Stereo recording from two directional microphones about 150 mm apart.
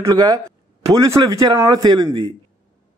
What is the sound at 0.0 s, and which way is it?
Speech, 25° right (ahead or behind).